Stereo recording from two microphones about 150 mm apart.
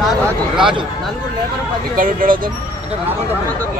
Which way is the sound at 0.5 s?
35° right (ahead or behind).